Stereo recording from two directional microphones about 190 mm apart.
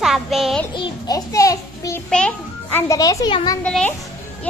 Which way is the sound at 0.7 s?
25° left (ahead or behind).